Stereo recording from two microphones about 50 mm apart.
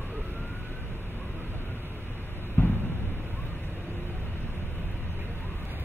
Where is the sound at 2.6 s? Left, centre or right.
Left.